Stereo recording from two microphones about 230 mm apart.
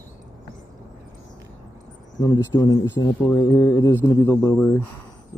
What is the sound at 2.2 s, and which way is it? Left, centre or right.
Mantra, centre.